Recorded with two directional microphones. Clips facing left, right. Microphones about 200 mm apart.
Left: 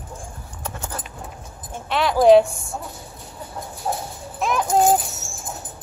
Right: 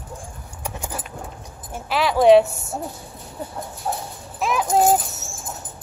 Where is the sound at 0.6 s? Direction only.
10° right (ahead or behind).